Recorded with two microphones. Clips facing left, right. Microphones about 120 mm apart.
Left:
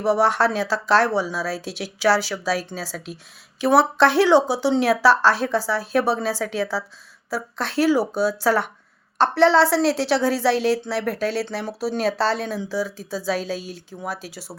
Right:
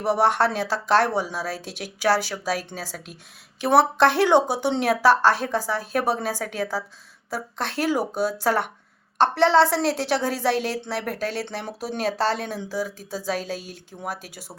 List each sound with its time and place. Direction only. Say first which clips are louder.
0.0 s a woman's voice: left 2 dB; 50° right (ahead or behind)